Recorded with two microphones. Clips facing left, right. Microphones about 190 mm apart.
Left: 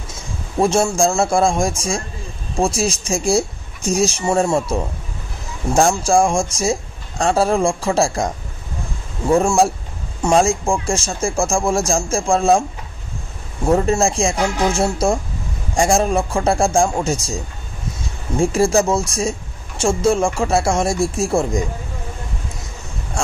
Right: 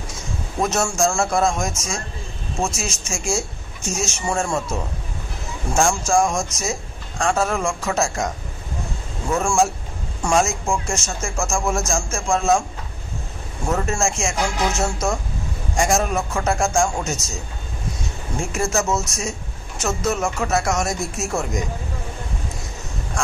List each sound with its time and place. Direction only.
0.6 s a man's voice: 30° left (ahead or behind)
5.8 s a man's voice: 35° left (ahead or behind)
10.2 s a man's voice: 30° left (ahead or behind)
13.7 s a man's voice: 30° left (ahead or behind)
18.4 s a man's voice: 30° left (ahead or behind)
23.2 s a sound: 30° left (ahead or behind)